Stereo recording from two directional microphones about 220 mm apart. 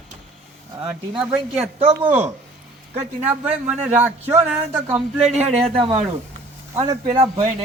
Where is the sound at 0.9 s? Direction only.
5° right (ahead or behind).